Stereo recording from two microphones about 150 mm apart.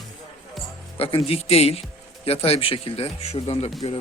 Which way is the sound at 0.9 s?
40° left (ahead or behind).